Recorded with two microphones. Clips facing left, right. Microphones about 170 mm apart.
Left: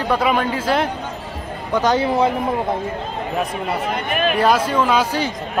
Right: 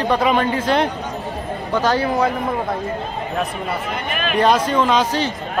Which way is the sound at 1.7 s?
20° left (ahead or behind).